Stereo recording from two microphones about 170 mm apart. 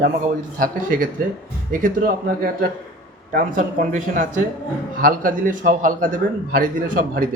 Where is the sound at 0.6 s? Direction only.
55° right (ahead or behind).